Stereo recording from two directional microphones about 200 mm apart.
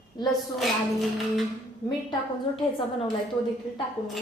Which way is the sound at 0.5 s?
Centre (ahead or behind).